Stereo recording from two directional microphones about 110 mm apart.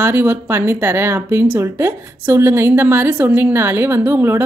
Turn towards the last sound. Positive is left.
turn(degrees=-20)  # may be behind; listen again after turning